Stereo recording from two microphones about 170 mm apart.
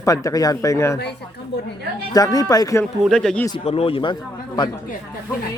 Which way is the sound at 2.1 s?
20° left (ahead or behind).